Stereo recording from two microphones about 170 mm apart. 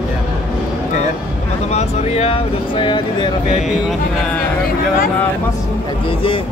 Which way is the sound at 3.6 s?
Centre (ahead or behind).